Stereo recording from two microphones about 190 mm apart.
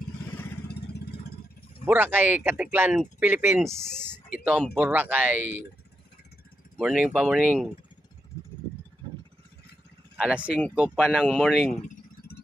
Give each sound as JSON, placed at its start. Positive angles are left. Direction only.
{"t": 0.7, "sound": "vehicle", "side_deg": 60}
{"t": 1.9, "sound": "speech", "side_deg": -10}
{"t": 3.6, "sound": "speech", "side_deg": 5}
{"t": 4.7, "sound": "speech", "side_deg": -10}
{"t": 6.8, "sound": "speech", "side_deg": 0}
{"t": 10.1, "sound": "speech", "side_deg": -5}
{"t": 11.7, "sound": "a sound", "side_deg": 45}